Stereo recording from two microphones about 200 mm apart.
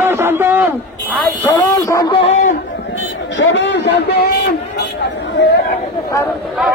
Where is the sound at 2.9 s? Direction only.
70° left (ahead or behind).